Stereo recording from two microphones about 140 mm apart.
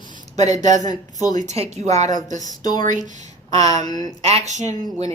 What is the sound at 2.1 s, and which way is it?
Speech, 25° left (ahead or behind).